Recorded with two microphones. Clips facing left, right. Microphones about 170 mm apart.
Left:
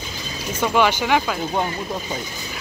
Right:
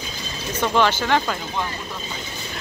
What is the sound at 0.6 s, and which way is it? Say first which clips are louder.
Speech: left 1 dB; 10° left (ahead or behind).